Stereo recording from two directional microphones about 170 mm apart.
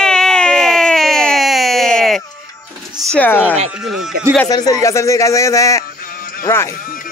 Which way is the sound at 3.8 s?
5° right (ahead or behind).